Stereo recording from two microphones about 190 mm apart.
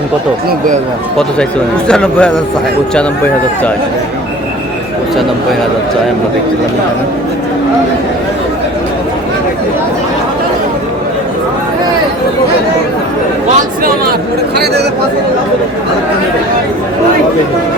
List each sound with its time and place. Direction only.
1.9 s a man's voice: 5° left (ahead or behind)
14.5 s speech: 60° right (ahead or behind)